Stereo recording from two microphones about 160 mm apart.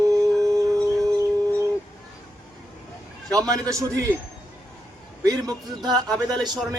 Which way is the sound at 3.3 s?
20° right (ahead or behind).